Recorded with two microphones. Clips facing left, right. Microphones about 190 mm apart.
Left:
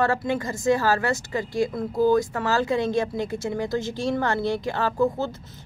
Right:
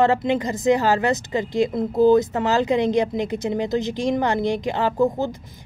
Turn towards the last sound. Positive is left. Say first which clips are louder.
# right 3 dB
turn(degrees=-15)  # may be behind; listen again after turning